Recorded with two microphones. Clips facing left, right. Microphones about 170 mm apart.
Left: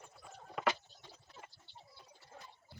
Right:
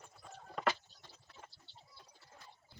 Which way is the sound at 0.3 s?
5° left (ahead or behind).